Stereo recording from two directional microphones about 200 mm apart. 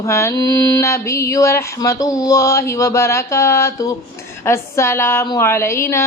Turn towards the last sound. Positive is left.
turn(degrees=15)  # may be behind; listen again after turning